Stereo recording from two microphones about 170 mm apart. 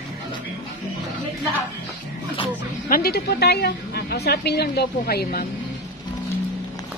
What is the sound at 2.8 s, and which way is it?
A woman's voice, 60° left (ahead or behind).